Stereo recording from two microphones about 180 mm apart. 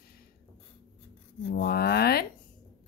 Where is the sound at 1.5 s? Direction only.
60° left (ahead or behind).